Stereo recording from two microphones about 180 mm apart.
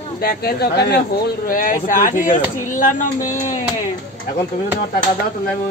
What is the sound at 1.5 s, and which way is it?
Speech, 50° left (ahead or behind).